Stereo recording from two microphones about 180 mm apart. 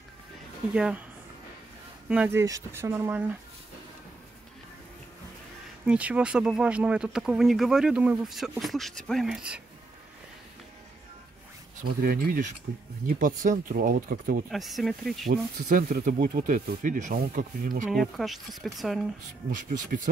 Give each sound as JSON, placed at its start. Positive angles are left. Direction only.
{"t": 0.7, "sound": "speech", "side_deg": -5}
{"t": 2.0, "sound": "speech", "side_deg": -10}
{"t": 5.9, "sound": "speech", "side_deg": -5}
{"t": 11.8, "sound": "speech", "side_deg": -50}
{"t": 14.5, "sound": "speech", "side_deg": 0}
{"t": 15.2, "sound": "speech", "side_deg": -50}
{"t": 17.8, "sound": "speech", "side_deg": 0}
{"t": 19.5, "sound": "speech", "side_deg": -45}